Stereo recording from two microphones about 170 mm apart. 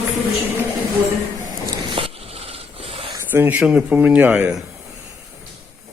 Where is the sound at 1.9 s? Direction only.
35° right (ahead or behind).